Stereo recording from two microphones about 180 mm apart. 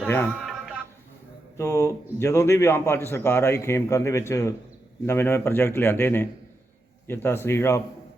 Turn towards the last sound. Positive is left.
turn(degrees=15)  # may be behind; listen again after turning